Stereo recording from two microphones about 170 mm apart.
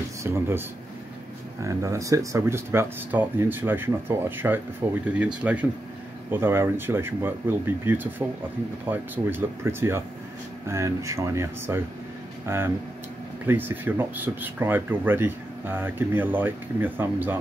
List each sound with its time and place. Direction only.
0.2 s speech: 15° right (ahead or behind)